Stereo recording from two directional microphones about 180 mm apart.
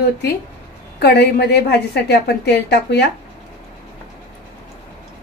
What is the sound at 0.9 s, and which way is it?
A woman's voice, 60° left (ahead or behind).